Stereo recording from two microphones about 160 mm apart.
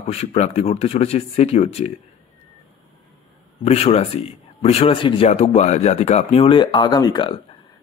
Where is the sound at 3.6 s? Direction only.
40° left (ahead or behind).